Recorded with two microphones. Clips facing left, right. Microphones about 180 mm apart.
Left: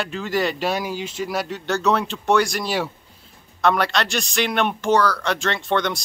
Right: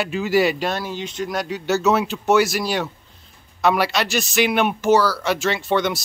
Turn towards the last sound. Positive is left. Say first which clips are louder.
# right 2 dB
turn(degrees=-5)  # may be behind; listen again after turning